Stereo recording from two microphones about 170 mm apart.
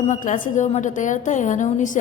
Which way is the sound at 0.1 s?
45° left (ahead or behind).